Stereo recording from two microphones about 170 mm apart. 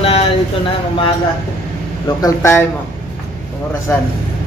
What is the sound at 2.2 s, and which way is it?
Speech, 15° left (ahead or behind).